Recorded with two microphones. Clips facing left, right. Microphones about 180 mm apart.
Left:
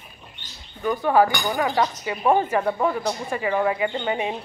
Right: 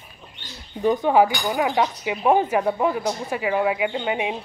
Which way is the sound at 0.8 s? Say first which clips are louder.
Right 2 dB; 20° right (ahead or behind).